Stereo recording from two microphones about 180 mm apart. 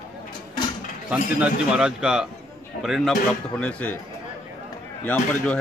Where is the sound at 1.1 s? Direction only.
5° right (ahead or behind).